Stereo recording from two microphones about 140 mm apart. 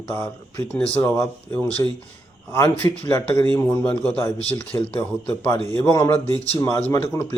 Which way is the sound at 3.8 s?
10° left (ahead or behind).